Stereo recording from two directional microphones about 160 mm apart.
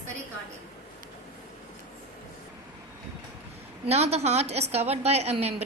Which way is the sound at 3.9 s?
40° right (ahead or behind).